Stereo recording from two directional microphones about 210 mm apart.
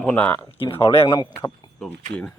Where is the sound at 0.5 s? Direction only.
25° left (ahead or behind).